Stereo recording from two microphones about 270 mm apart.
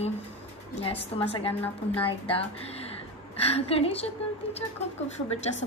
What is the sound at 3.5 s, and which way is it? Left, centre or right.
Speech, left.